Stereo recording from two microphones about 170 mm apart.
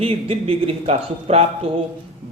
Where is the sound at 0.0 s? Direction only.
35° right (ahead or behind).